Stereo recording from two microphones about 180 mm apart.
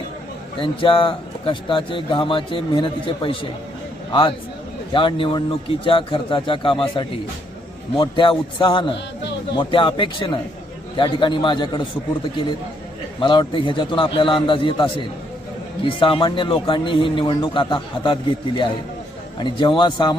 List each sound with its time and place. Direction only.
0.6 s a man's voice: 30° left (ahead or behind)
13.1 s a man's voice: 25° left (ahead or behind)